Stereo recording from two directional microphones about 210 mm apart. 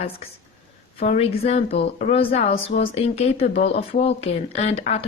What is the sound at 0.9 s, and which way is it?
A woman's voice, 30° left (ahead or behind).